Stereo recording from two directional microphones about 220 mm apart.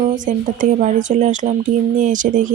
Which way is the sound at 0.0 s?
35° right (ahead or behind).